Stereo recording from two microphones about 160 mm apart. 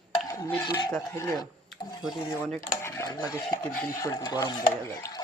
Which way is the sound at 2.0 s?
Centre (ahead or behind).